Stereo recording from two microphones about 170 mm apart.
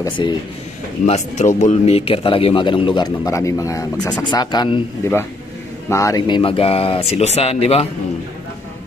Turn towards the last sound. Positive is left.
turn(degrees=35)  # may be behind; listen again after turning